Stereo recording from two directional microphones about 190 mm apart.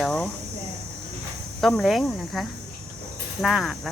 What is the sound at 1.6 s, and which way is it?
Speech, centre (ahead or behind).